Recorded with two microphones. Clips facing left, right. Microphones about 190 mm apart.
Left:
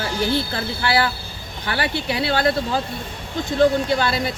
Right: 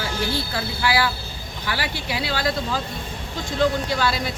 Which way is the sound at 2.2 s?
55° left (ahead or behind).